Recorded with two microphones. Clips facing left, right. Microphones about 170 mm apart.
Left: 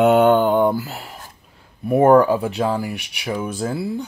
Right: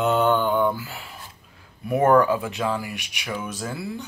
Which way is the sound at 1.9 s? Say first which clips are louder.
Left 5 dB; 30° left (ahead or behind).